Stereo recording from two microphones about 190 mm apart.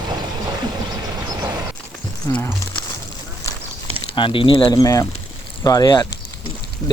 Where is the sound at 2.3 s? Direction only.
15° left (ahead or behind).